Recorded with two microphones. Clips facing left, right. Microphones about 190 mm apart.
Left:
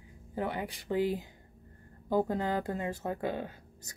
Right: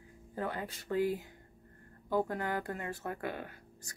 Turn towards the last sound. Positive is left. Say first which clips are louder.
# left 5 dB
turn(degrees=25)  # may be behind; listen again after turning